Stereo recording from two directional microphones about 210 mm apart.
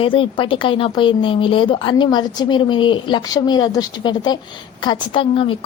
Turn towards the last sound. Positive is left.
turn(degrees=25)  # may be behind; listen again after turning